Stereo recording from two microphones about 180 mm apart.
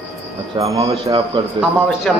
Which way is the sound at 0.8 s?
30° right (ahead or behind).